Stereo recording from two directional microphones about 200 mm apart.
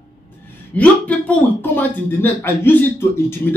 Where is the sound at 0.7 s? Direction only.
5° left (ahead or behind).